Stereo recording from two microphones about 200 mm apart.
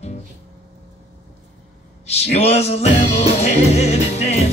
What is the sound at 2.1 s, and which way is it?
Music, 30° left (ahead or behind).